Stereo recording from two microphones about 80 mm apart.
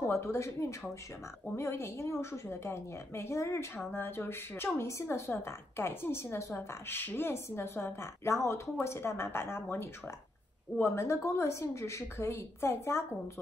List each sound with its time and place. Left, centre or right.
0.1 s a woman's voice: left